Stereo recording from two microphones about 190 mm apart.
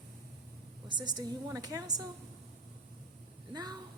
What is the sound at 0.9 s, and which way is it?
A woman's voice, 25° right (ahead or behind).